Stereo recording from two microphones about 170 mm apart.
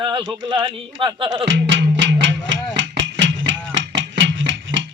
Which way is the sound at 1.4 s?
90° right.